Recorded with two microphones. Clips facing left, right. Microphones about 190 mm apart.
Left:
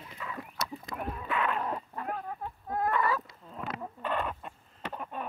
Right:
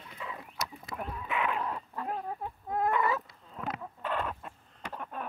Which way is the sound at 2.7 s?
20° right (ahead or behind).